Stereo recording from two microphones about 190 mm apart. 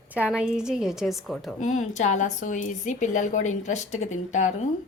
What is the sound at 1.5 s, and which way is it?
A woman's voice, 40° left (ahead or behind).